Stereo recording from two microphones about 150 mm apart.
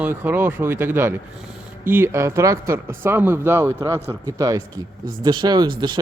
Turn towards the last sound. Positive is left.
turn(degrees=-30)  # may be behind; listen again after turning